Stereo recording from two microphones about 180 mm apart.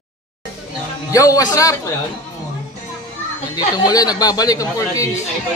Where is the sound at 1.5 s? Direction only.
20° left (ahead or behind).